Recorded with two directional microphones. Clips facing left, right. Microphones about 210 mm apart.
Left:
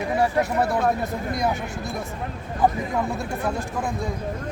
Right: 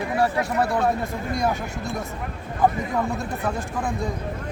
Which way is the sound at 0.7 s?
20° left (ahead or behind).